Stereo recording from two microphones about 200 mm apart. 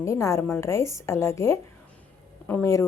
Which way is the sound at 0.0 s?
15° left (ahead or behind).